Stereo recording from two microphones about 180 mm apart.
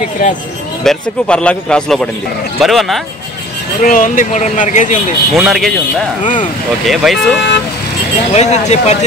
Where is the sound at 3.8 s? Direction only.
45° left (ahead or behind).